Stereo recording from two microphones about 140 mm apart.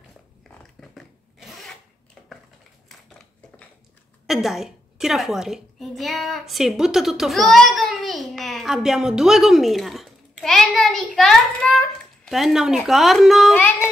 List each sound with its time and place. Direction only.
0.7 s zipper: centre (ahead or behind)
2.2 s typing: 5° left (ahead or behind)
4.3 s a woman's voice: centre (ahead or behind)